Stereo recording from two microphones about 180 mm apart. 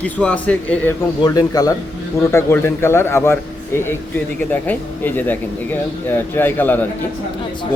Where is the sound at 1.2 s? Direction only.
20° left (ahead or behind).